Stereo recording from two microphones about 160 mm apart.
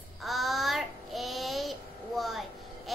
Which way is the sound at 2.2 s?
Centre (ahead or behind).